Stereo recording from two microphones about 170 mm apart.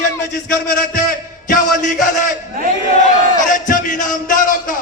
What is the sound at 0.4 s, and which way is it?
Speech, 60° left (ahead or behind).